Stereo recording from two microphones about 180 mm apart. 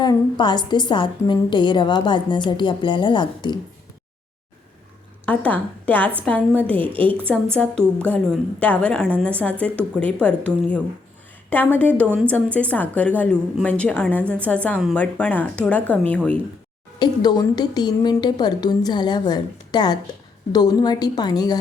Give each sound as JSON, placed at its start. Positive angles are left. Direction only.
{"t": 0.0, "sound": "a woman's voice", "side_deg": 25}
{"t": 5.2, "sound": "a woman's voice", "side_deg": 10}
{"t": 6.7, "sound": "a woman's voice", "side_deg": -30}
{"t": 7.5, "sound": "a woman's voice", "side_deg": 5}
{"t": 17.0, "sound": "a woman's voice", "side_deg": 25}